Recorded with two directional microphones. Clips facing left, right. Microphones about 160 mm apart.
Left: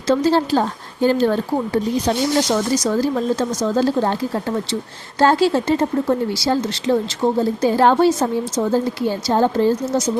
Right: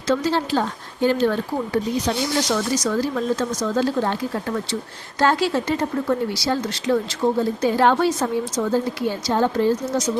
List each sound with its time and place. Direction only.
0.1 s speech: 35° left (ahead or behind)